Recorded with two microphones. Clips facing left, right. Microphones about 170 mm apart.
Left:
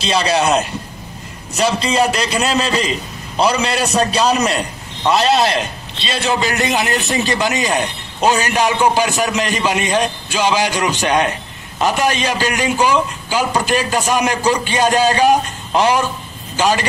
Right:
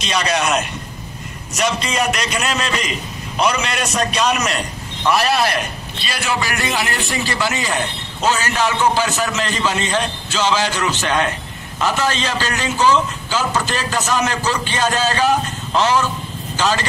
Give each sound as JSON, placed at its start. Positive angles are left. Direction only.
{"t": 0.0, "sound": "a man's voice", "side_deg": 30}
{"t": 5.0, "sound": "a man's voice", "side_deg": 25}